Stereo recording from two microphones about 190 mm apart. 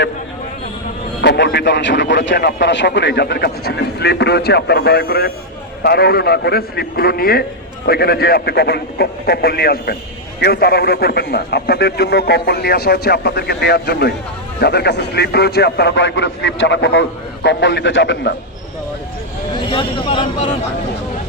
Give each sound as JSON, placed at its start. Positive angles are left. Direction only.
{"t": 1.2, "sound": "a man's voice", "side_deg": 65}
{"t": 19.7, "sound": "speech", "side_deg": 30}